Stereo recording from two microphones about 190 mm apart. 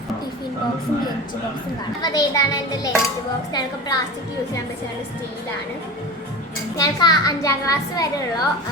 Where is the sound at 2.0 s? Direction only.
20° left (ahead or behind).